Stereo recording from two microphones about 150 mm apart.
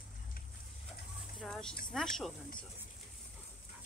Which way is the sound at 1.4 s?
5° left (ahead or behind).